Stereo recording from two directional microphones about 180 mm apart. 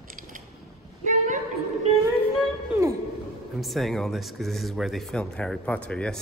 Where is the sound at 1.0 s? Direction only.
45° right (ahead or behind).